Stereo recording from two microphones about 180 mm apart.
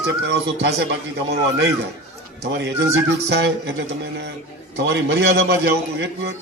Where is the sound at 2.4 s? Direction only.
70° right (ahead or behind).